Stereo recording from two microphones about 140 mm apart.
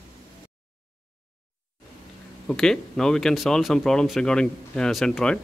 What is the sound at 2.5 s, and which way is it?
Speech, 5° left (ahead or behind).